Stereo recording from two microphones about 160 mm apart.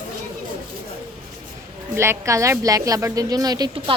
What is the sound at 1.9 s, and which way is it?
A woman's voice, 15° right (ahead or behind).